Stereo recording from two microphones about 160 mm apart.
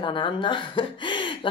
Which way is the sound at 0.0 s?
30° left (ahead or behind).